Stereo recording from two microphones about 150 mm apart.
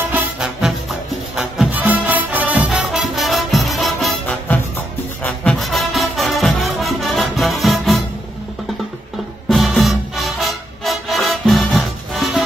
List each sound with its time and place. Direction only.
0.1 s music: 5° right (ahead or behind)
9.5 s music: centre (ahead or behind)